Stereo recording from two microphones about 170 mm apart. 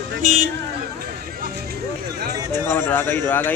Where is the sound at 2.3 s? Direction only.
20° right (ahead or behind).